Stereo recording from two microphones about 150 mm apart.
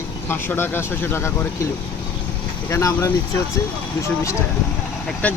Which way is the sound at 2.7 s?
20° left (ahead or behind).